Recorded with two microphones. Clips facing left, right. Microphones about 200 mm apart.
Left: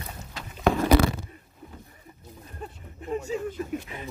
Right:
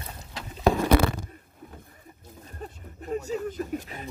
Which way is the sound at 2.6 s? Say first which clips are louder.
Even; 40° right (ahead or behind).